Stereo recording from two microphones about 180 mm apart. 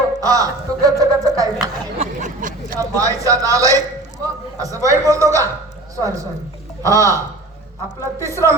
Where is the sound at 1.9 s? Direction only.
40° right (ahead or behind).